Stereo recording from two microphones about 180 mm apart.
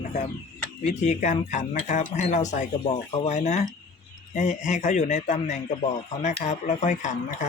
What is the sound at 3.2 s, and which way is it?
Speech, 40° left (ahead or behind).